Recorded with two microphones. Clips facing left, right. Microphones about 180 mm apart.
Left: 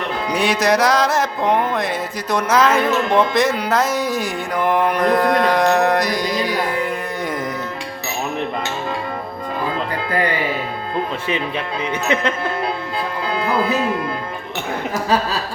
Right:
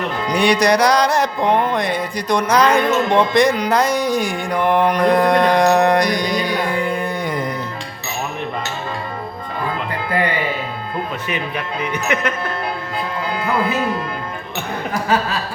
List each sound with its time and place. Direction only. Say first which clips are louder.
0.3 s music: right 2 dB; 5° left (ahead or behind)
11.8 s speech: left 1 dB; 25° left (ahead or behind)